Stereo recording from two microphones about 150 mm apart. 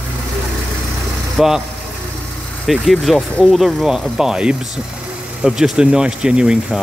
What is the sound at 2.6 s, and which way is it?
Speech, 5° right (ahead or behind).